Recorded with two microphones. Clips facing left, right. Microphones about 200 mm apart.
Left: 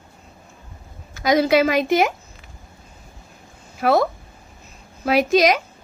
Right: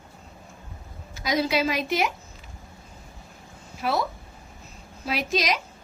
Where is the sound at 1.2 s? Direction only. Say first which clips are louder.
Left 8 dB; 50° left (ahead or behind).